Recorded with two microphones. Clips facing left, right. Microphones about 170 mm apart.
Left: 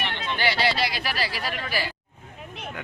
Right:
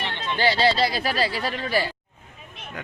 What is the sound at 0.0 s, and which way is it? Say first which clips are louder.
Speech: right 3 dB; 25° right (ahead or behind).